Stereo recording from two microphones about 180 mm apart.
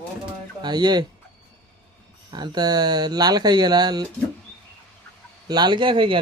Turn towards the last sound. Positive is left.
turn(degrees=-30)  # may be behind; listen again after turning